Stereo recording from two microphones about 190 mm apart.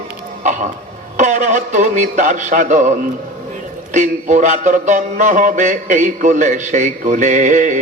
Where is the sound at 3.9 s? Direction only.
40° right (ahead or behind).